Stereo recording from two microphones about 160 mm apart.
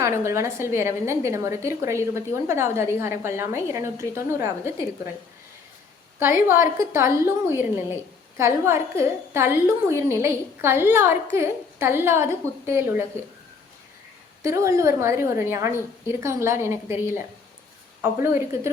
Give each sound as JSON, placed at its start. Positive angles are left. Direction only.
{"t": 0.0, "sound": "a woman's voice", "side_deg": -20}
{"t": 6.1, "sound": "a woman's voice", "side_deg": -15}
{"t": 14.4, "sound": "a woman's voice", "side_deg": -20}